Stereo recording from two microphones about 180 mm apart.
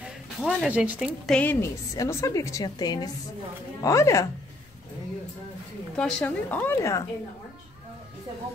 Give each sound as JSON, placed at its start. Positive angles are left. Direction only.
{"t": 0.4, "sound": "a woman's voice", "side_deg": -5}
{"t": 5.9, "sound": "a woman's voice", "side_deg": 5}